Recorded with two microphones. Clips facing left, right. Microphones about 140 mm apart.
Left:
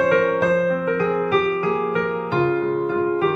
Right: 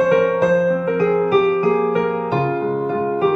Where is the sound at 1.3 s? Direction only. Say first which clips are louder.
Right 5 dB; 40° right (ahead or behind).